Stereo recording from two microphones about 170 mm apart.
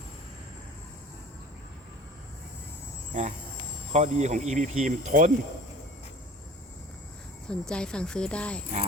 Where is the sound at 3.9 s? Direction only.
40° right (ahead or behind).